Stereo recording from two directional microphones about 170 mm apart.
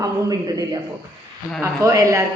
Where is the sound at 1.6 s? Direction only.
15° right (ahead or behind).